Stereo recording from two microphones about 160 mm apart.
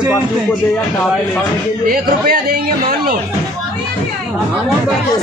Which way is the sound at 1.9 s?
70° right (ahead or behind).